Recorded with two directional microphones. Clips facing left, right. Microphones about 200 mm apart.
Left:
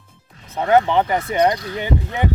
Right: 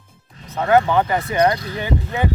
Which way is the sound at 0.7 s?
20° left (ahead or behind).